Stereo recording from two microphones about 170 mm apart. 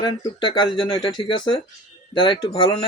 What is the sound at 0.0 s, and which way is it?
Speech, 25° left (ahead or behind).